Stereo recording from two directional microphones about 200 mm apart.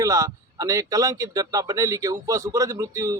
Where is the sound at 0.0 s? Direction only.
15° right (ahead or behind).